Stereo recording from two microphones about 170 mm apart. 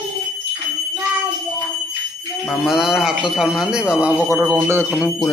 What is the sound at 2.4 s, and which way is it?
Speech, centre (ahead or behind).